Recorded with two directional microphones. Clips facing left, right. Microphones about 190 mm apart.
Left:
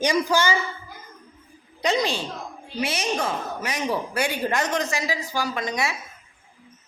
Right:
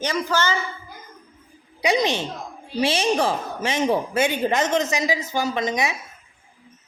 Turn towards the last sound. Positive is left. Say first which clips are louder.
# right 3 dB
turn(degrees=-20)  # may be behind; listen again after turning